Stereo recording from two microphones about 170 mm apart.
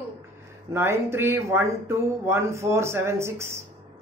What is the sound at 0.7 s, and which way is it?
Speech, 15° right (ahead or behind).